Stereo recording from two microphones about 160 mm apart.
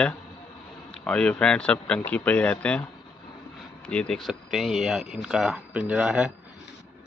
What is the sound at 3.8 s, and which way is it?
Speech, 5° left (ahead or behind).